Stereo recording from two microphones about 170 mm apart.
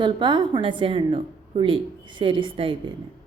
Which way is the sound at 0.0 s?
25° right (ahead or behind).